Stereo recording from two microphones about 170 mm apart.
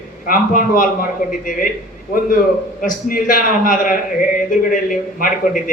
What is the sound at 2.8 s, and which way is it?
Speech, 55° left (ahead or behind).